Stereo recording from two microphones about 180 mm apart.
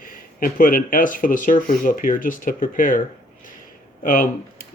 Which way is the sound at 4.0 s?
45° left (ahead or behind).